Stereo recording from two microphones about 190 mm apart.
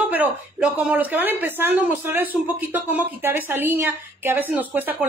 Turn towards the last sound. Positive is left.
turn(degrees=-10)  # may be behind; listen again after turning